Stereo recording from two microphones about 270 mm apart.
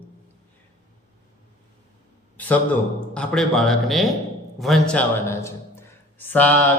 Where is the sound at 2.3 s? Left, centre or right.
Centre.